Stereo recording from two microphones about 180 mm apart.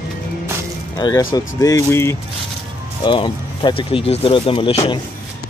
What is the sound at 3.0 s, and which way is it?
Speech, 25° left (ahead or behind).